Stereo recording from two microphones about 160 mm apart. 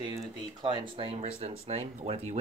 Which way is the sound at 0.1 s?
30° right (ahead or behind).